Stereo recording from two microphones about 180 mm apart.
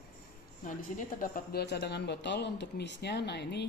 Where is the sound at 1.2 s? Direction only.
60° left (ahead or behind).